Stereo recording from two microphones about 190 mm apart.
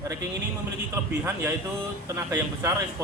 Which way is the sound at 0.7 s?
15° right (ahead or behind).